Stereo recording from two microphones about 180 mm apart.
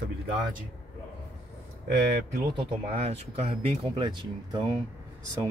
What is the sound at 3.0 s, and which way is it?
Speech, 35° right (ahead or behind).